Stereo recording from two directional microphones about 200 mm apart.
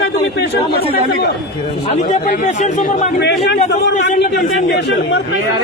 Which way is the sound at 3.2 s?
55° left (ahead or behind).